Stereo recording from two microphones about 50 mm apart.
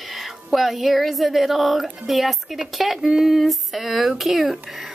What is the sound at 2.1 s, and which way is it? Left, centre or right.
A woman's voice, centre.